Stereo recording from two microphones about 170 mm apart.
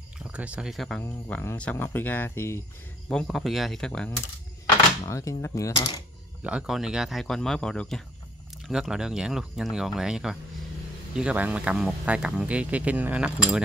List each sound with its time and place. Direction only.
0.3 s speech: 5° right (ahead or behind)
1.0 s speech: 15° left (ahead or behind)
3.1 s speech: centre (ahead or behind)
5.0 s speech: 20° left (ahead or behind)
6.4 s speech: 5° right (ahead or behind)